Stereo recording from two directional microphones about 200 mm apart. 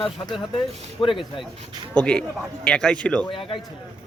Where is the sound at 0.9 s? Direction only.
25° left (ahead or behind).